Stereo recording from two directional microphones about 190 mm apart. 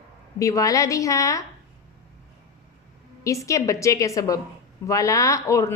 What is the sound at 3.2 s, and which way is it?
A woman's voice, 15° left (ahead or behind).